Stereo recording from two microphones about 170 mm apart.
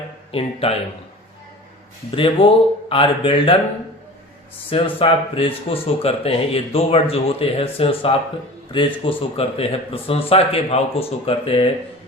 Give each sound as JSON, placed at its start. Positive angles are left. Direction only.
{"t": 0.3, "sound": "speech", "side_deg": 35}
{"t": 2.0, "sound": "speech", "side_deg": 30}
{"t": 4.7, "sound": "speech", "side_deg": 30}